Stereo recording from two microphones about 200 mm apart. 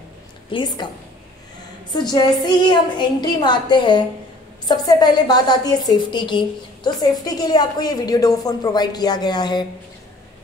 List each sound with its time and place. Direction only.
0.5 s a woman's voice: 25° left (ahead or behind)
1.9 s a woman's voice: 20° left (ahead or behind)